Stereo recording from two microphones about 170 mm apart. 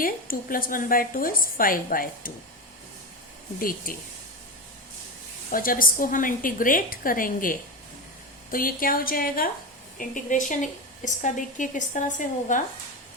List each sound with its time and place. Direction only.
0.0 s a woman's voice: 55° left (ahead or behind)
3.6 s a woman's voice: 55° left (ahead or behind)
5.5 s a woman's voice: 55° left (ahead or behind)